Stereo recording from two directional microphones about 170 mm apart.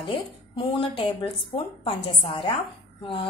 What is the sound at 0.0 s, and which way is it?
A woman's voice, 30° left (ahead or behind).